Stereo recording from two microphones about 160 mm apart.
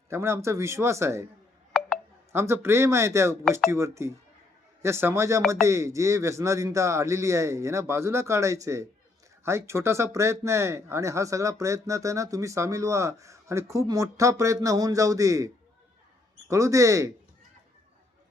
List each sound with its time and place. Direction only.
0.1 s speech: 15° right (ahead or behind)
2.3 s speech: 15° right (ahead or behind)
16.5 s speech: 20° right (ahead or behind)